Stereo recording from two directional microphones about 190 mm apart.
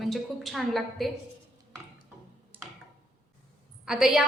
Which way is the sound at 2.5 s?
10° right (ahead or behind).